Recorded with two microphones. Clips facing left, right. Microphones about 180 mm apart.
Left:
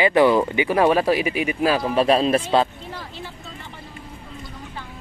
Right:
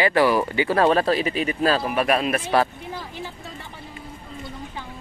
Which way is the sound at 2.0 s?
30° left (ahead or behind).